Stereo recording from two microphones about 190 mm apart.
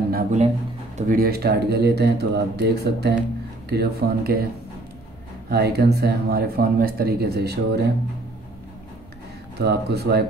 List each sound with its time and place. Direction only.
0.1 s speech: 40° right (ahead or behind)
5.5 s speech: 55° right (ahead or behind)
9.6 s speech: 60° right (ahead or behind)